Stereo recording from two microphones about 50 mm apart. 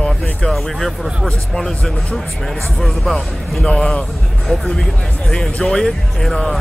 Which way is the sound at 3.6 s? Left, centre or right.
Centre.